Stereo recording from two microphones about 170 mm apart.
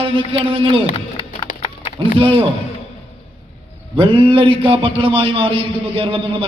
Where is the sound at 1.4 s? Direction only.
40° left (ahead or behind).